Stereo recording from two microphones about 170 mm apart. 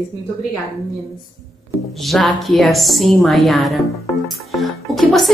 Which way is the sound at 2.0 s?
Centre (ahead or behind).